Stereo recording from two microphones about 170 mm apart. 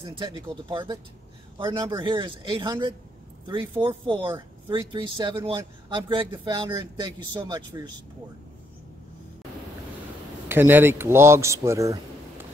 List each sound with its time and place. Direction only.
0.0 s speech: 30° right (ahead or behind)
10.5 s a man's voice: 15° right (ahead or behind)